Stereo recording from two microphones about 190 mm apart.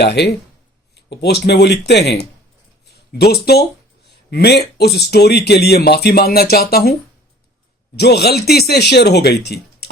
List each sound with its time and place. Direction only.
0.0 s speech: 60° left (ahead or behind)
7.9 s speech: 60° left (ahead or behind)